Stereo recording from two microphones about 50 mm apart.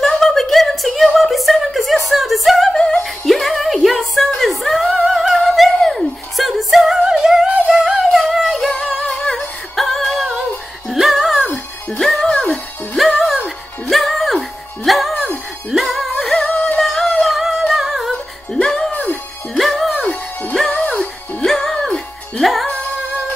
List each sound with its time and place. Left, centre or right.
0.0 s a sound: centre
2.7 s music: centre
3.3 s a sound: centre
4.4 s singing: centre
7.0 s music: centre
13.0 s music: centre
17.7 s humming: centre
18.5 s music: centre
19.5 s music: centre
20.7 s music: left
21.5 s music: centre